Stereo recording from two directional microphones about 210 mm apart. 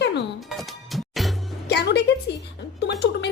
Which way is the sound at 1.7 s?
50° left (ahead or behind).